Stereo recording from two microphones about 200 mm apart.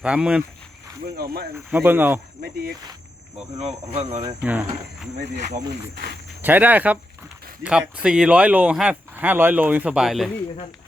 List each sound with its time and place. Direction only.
0.0 s speech: 5° right (ahead or behind)
1.0 s speech: 50° right (ahead or behind)
1.7 s speech: 10° right (ahead or behind)
3.6 s speech: 30° right (ahead or behind)
4.4 s speech: 10° right (ahead or behind)
5.2 s speech: 35° right (ahead or behind)
6.4 s speech: 10° right (ahead or behind)